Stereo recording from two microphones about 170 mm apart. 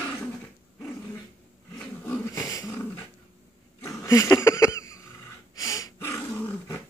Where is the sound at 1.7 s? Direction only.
15° left (ahead or behind).